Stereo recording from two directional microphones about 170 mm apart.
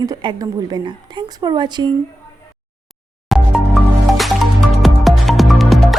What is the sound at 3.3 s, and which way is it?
Music, centre (ahead or behind).